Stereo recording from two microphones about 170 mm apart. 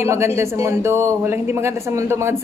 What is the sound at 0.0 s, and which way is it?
A man's voice, 15° right (ahead or behind).